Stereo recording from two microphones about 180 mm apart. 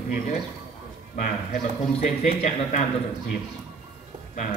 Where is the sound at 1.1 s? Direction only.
45° left (ahead or behind).